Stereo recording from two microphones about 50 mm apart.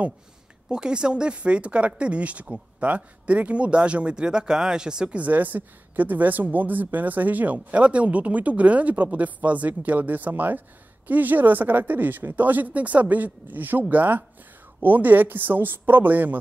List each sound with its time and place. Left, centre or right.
0.7 s speech: centre
5.2 s a woman's voice: right